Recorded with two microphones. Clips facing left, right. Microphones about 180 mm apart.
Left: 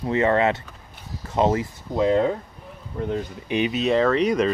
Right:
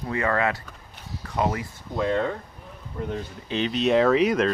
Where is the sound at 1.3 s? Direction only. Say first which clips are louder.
Left 5 dB; 25° left (ahead or behind).